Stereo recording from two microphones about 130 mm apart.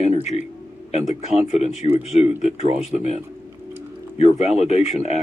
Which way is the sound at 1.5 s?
50° left (ahead or behind).